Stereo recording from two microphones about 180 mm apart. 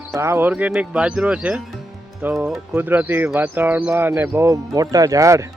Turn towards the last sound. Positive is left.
turn(degrees=-15)  # may be behind; listen again after turning